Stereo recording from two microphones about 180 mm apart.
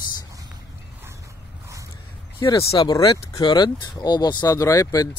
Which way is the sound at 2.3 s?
25° left (ahead or behind).